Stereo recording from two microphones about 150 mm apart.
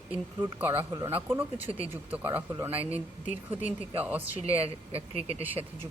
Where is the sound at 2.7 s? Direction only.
40° right (ahead or behind).